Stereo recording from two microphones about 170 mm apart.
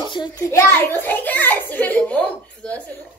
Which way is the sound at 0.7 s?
10° left (ahead or behind).